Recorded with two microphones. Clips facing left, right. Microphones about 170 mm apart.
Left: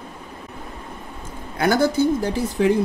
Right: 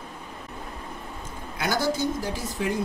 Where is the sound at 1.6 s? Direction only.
55° left (ahead or behind).